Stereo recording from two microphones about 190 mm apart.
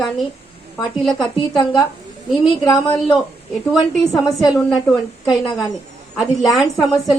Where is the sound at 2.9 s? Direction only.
5° left (ahead or behind).